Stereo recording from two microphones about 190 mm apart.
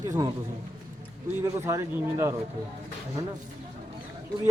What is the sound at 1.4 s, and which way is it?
Speech, 15° right (ahead or behind).